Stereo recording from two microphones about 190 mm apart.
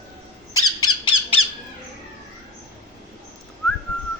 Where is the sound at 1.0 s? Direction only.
30° left (ahead or behind).